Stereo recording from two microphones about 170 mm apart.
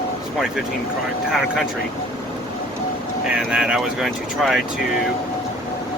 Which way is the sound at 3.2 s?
5° right (ahead or behind).